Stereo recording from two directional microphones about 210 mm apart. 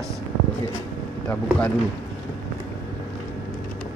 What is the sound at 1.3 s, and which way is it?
Speech, 5° left (ahead or behind).